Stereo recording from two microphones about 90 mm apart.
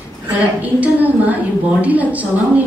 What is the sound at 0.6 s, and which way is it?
A woman's voice, 20° right (ahead or behind).